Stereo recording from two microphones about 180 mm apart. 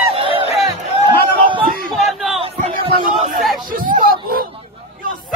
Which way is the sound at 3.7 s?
50° right (ahead or behind).